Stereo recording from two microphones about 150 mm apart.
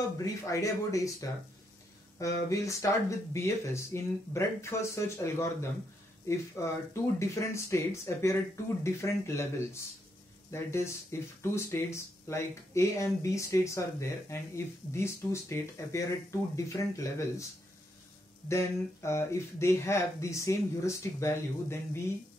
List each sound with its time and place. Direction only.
0.2 s speech: 20° left (ahead or behind)
18.5 s speech: 20° left (ahead or behind)